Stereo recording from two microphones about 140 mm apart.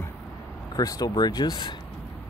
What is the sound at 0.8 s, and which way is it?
Speech, 25° left (ahead or behind).